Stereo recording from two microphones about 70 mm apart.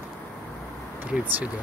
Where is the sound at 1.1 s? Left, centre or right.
Right.